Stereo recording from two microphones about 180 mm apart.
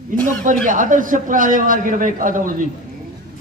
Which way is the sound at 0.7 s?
45° right (ahead or behind).